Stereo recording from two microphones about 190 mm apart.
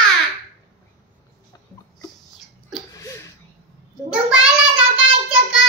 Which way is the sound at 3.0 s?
15° left (ahead or behind).